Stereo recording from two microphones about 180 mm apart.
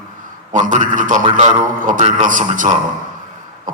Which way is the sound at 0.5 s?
45° right (ahead or behind).